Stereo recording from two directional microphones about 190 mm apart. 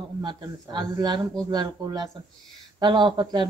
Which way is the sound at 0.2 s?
20° right (ahead or behind).